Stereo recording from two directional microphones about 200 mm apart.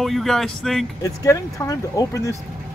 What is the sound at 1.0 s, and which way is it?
Speech, 15° left (ahead or behind).